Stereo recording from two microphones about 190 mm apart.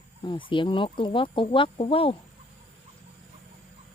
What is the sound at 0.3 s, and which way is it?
Speech, 25° left (ahead or behind).